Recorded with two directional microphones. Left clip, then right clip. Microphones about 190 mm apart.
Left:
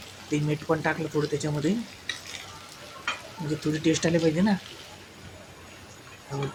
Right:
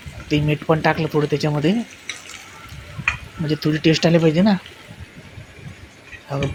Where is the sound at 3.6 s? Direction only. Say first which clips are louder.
Right 8 dB; 25° right (ahead or behind).